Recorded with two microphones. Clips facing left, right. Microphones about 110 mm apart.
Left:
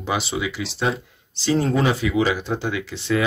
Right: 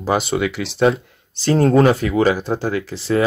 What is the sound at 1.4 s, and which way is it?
Speech, 50° right (ahead or behind).